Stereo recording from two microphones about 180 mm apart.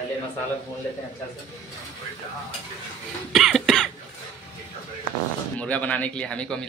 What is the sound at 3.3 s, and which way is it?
Cough, centre (ahead or behind).